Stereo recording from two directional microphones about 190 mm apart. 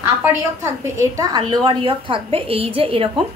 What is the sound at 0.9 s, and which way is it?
A woman's voice, 20° right (ahead or behind).